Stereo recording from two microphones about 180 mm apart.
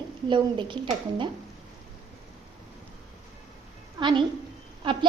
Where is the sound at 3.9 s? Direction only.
25° right (ahead or behind).